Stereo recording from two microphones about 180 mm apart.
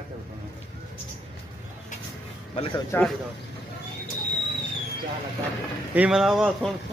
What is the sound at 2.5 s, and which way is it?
Speech, 30° left (ahead or behind).